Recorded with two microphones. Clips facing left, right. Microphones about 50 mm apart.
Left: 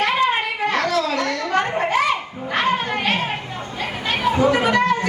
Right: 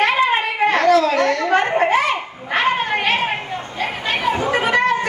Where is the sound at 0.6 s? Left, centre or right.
Right.